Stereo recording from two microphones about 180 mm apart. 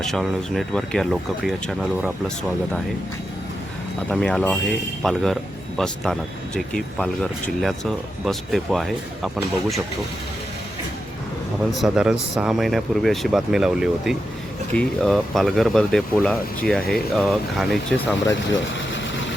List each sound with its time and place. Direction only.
0.0 s speech: centre (ahead or behind)
4.1 s speech: 5° left (ahead or behind)
11.7 s speech: centre (ahead or behind)
18.3 s speech: 90° left